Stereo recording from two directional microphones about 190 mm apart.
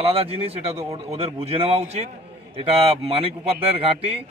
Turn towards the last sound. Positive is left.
turn(degrees=-30)  # may be behind; listen again after turning